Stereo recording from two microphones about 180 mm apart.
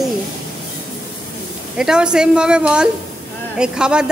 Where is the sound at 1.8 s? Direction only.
5° right (ahead or behind).